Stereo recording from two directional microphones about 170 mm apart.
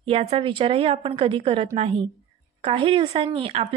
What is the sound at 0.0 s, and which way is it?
A woman's voice, 35° right (ahead or behind).